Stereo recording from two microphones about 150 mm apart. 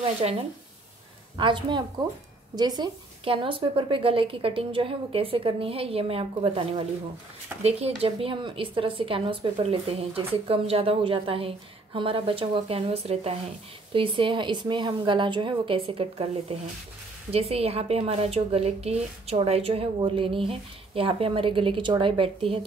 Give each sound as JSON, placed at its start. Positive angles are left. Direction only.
{"t": 0.2, "sound": "a woman's voice", "side_deg": -40}
{"t": 1.4, "sound": "a woman's voice", "side_deg": -30}